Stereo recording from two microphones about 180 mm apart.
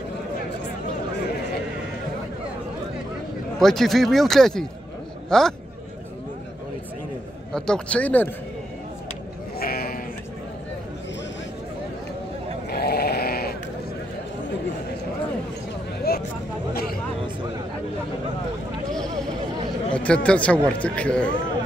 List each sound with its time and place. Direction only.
3.5 s speech: centre (ahead or behind)
7.5 s speech: 5° left (ahead or behind)
9.6 s sheep: 55° left (ahead or behind)
12.6 s sheep: 60° left (ahead or behind)
16.1 s a sound: 60° left (ahead or behind)
19.9 s speech: 5° left (ahead or behind)